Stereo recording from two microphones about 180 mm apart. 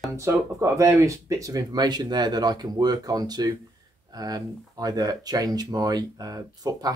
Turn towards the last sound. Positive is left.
turn(degrees=-20)  # may be behind; listen again after turning